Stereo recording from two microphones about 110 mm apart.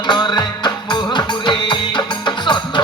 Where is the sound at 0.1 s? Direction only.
45° left (ahead or behind).